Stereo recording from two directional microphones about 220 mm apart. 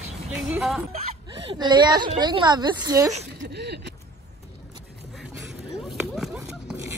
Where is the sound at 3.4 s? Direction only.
50° right (ahead or behind).